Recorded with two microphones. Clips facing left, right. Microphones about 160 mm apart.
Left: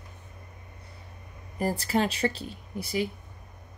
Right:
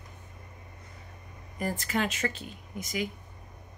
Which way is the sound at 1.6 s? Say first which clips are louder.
Left 4 dB; 35° left (ahead or behind).